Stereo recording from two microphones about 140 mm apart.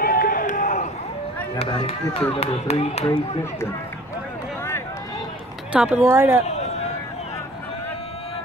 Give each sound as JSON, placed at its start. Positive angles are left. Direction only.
{"t": 0.0, "sound": "run", "side_deg": 90}
{"t": 1.6, "sound": "speech", "side_deg": 35}
{"t": 5.7, "sound": "speech", "side_deg": -10}